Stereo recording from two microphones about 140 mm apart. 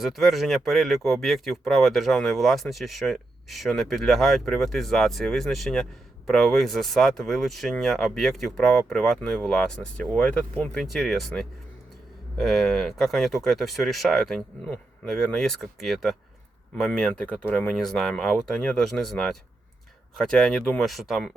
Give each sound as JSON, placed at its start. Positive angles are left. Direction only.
{"t": 0.0, "sound": "speech", "side_deg": 0}